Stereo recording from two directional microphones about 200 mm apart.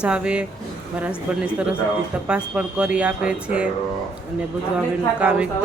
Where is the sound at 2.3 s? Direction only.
5° right (ahead or behind).